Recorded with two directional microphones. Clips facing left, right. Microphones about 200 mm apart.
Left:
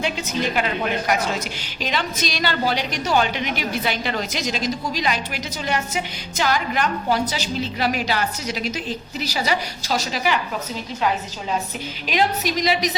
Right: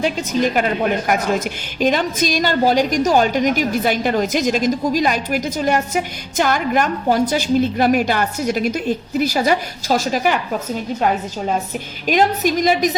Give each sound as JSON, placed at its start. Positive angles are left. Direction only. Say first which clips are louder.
{"t": 0.0, "sound": "a woman's voice", "louder": "right 6 dB", "side_deg": -40}